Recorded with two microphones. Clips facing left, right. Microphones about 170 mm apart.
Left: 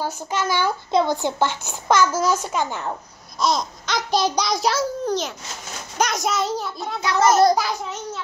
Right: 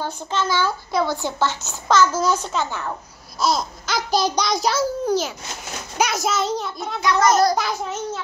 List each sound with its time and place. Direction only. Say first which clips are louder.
0.0 s a child's voice: even; 10° left (ahead or behind)
3.3 s a child's voice: even; 5° right (ahead or behind)